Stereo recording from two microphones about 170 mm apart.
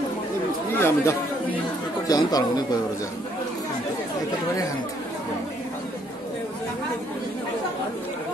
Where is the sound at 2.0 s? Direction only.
20° left (ahead or behind).